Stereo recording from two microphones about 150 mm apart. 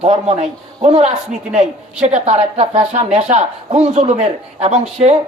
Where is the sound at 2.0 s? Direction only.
45° right (ahead or behind).